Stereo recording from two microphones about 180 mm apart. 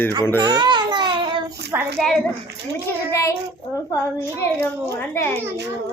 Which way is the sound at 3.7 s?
15° left (ahead or behind).